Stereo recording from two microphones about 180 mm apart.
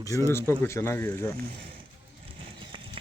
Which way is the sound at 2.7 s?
25° right (ahead or behind).